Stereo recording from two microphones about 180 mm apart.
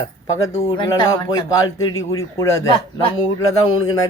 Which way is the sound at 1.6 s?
20° left (ahead or behind).